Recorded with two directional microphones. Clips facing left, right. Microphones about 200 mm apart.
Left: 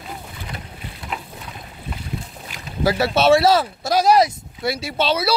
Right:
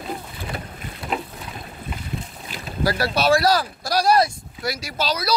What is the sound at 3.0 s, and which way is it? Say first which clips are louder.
Speech: left 4 dB; 25° left (ahead or behind).